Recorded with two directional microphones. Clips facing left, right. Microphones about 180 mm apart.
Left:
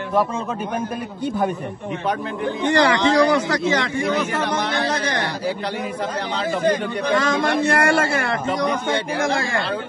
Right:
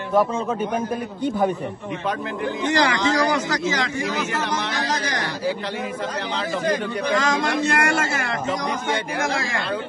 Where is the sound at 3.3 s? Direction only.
60° left (ahead or behind).